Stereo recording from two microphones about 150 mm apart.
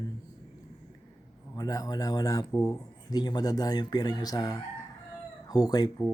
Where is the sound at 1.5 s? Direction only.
25° left (ahead or behind).